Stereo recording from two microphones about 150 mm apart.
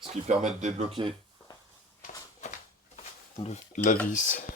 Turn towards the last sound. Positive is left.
turn(degrees=60)  # may be behind; listen again after turning